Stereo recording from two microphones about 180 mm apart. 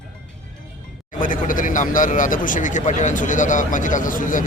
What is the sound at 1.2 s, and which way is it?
Speech, 50° left (ahead or behind).